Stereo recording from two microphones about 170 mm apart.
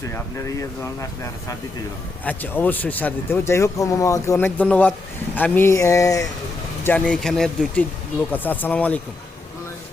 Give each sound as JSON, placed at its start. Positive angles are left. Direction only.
{"t": 0.1, "sound": "speech", "side_deg": 15}
{"t": 6.8, "sound": "speech", "side_deg": 10}